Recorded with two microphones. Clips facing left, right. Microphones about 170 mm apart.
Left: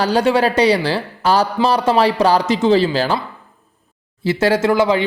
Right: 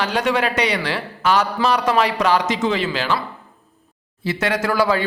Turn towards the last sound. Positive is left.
turn(degrees=20)  # may be behind; listen again after turning